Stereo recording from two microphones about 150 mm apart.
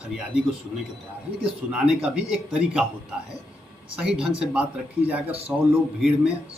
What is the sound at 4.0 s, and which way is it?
A man's voice, 5° right (ahead or behind).